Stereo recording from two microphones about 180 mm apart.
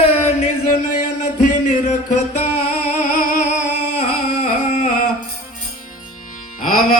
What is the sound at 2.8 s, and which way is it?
Humming, 45° left (ahead or behind).